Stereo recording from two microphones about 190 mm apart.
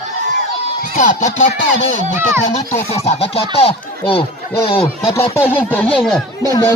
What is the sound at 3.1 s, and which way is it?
Speech, 30° left (ahead or behind).